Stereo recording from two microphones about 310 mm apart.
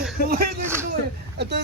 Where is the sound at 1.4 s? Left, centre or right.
Right.